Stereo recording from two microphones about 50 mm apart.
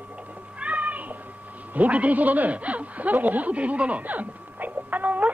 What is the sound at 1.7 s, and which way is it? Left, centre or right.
A man's voice, right.